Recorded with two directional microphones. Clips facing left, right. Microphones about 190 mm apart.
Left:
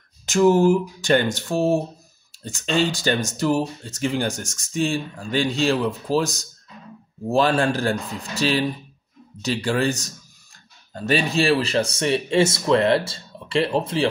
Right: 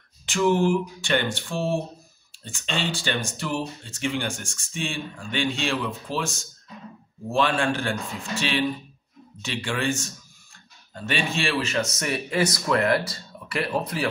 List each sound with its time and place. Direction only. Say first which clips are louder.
0.3 s speech: left 5 dB; 40° left (ahead or behind); by 14.0 s 25° left (ahead or behind)